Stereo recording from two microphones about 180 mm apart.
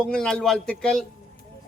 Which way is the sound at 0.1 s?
5° left (ahead or behind).